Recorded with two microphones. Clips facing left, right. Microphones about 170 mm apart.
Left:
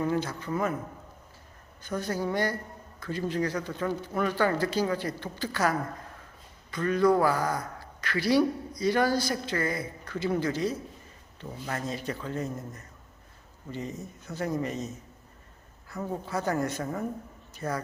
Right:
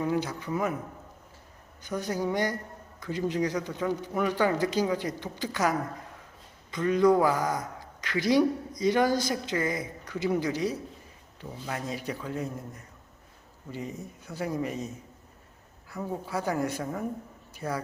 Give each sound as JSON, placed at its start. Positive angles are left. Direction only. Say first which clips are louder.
{"t": 0.0, "sound": "speech", "louder": "even", "side_deg": -10}
{"t": 1.8, "sound": "speech", "louder": "even", "side_deg": -15}